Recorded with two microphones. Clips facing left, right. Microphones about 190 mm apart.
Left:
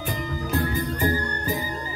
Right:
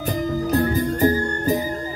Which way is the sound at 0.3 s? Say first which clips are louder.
Right 6 dB; 45° right (ahead or behind).